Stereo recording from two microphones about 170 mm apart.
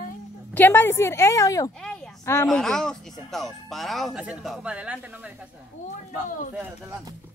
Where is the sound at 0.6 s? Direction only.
10° left (ahead or behind).